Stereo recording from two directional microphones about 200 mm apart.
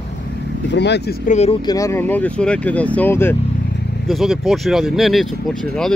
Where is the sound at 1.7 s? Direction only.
15° left (ahead or behind).